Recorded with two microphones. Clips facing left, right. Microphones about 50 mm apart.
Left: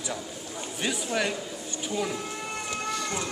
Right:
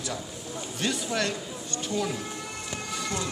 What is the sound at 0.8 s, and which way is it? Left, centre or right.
Speech, centre.